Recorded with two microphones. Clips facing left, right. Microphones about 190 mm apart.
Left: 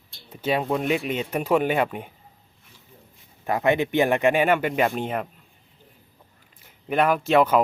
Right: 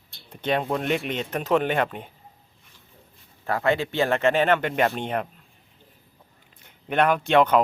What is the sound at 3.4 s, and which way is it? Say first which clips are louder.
Speech: left 2 dB; 20° left (ahead or behind).